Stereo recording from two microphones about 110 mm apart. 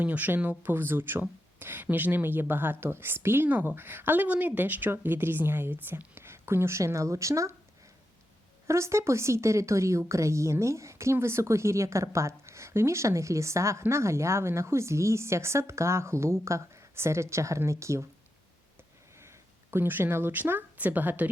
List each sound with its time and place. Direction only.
0.0 s a woman's voice: 15° right (ahead or behind)
8.6 s a woman's voice: 25° right (ahead or behind)
19.7 s speech: 20° right (ahead or behind)